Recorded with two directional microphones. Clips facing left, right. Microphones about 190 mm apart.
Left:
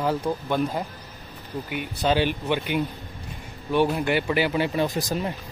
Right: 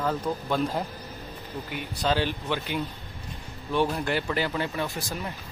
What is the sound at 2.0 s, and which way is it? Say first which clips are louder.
Speech: left 4 dB; 15° left (ahead or behind).